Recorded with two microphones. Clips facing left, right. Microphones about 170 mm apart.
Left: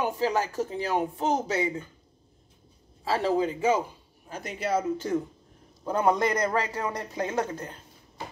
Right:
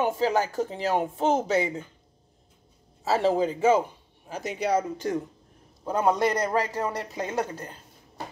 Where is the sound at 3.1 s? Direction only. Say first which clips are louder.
Right 2 dB; 25° right (ahead or behind).